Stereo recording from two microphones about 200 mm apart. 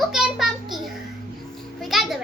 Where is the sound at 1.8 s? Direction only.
Centre (ahead or behind).